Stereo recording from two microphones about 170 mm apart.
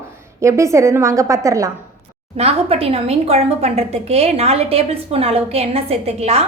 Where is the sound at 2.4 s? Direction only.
35° right (ahead or behind).